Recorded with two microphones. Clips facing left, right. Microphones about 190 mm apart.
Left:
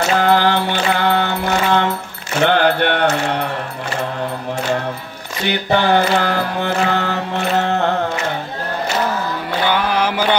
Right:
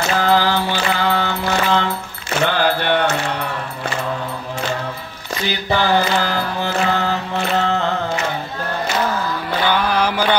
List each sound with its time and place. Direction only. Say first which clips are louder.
0.2 s music: even; 60° left (ahead or behind)
2.4 s mantra: left 4 dB; 60° left (ahead or behind)
5.5 s music: left 3 dB; 60° left (ahead or behind)
9.7 s mantra: even; 10° left (ahead or behind)